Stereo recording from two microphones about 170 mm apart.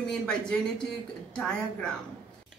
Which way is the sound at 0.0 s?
5° left (ahead or behind).